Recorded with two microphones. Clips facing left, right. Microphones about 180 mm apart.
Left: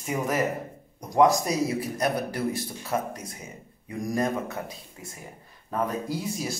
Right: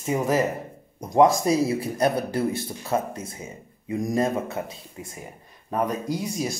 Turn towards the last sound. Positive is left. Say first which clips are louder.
# right 3 dB
turn(degrees=-15)  # may be behind; listen again after turning